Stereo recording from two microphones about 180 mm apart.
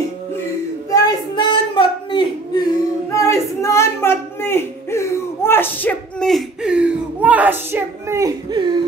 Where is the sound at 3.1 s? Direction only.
15° left (ahead or behind).